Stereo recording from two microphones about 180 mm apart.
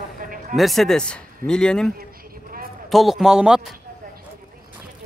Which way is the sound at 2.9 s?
Centre (ahead or behind).